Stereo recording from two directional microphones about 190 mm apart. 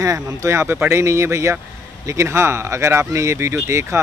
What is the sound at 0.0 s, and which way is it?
Speech, 15° right (ahead or behind).